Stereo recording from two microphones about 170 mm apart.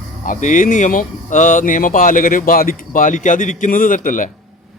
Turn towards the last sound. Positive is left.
turn(degrees=50)  # may be behind; listen again after turning